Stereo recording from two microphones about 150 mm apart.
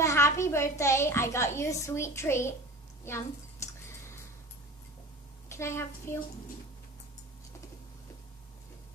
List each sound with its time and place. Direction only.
0.0 s a sound: 20° left (ahead or behind)
0.7 s a child's voice: 20° left (ahead or behind)
5.5 s a child's voice: 20° left (ahead or behind)